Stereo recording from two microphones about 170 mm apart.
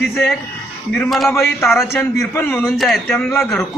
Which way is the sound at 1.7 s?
Centre (ahead or behind).